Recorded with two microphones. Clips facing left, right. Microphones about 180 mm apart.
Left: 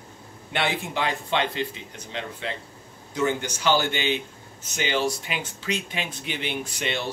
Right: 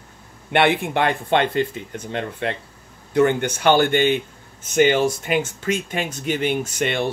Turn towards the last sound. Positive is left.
turn(degrees=-55)  # may be behind; listen again after turning